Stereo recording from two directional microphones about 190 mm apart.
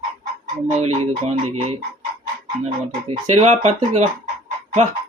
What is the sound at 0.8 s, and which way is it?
Speech, 35° right (ahead or behind).